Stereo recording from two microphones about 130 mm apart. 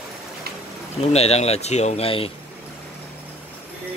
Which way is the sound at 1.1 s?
55° left (ahead or behind).